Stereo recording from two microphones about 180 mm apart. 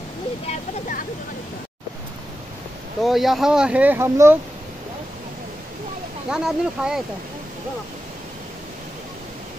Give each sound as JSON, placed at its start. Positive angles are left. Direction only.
{"t": 0.5, "sound": "speech", "side_deg": 50}
{"t": 3.0, "sound": "speech", "side_deg": 0}
{"t": 6.3, "sound": "speech", "side_deg": -5}